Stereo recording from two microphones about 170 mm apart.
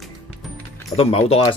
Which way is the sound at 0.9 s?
35° left (ahead or behind).